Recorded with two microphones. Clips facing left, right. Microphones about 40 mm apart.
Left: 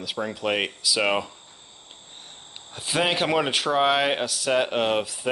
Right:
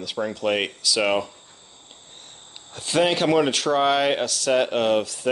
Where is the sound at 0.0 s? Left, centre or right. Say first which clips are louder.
Right 3 dB; centre.